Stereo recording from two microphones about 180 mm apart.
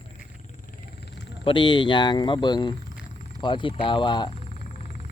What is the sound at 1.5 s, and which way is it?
Speech, 25° left (ahead or behind).